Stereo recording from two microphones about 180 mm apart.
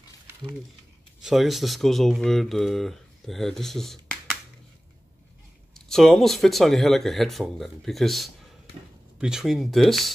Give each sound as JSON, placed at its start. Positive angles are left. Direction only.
{"t": 1.2, "sound": "speech", "side_deg": 0}
{"t": 5.9, "sound": "speech", "side_deg": 0}